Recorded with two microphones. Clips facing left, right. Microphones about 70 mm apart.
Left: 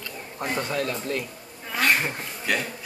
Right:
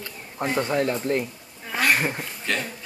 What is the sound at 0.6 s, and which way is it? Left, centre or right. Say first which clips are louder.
Speech: right 6 dB; right.